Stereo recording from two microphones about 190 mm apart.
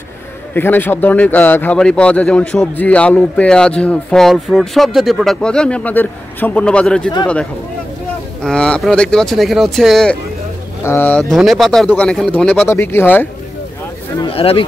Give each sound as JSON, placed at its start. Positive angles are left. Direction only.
{"t": 0.6, "sound": "speech", "side_deg": 10}
{"t": 8.4, "sound": "speech", "side_deg": 5}
{"t": 14.1, "sound": "speech", "side_deg": 30}